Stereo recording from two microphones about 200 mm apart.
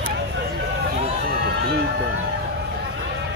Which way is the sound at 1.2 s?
50° right (ahead or behind).